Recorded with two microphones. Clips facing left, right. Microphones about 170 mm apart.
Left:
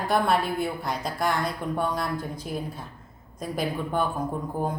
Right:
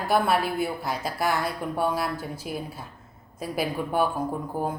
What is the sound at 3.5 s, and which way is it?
Speech, 10° right (ahead or behind).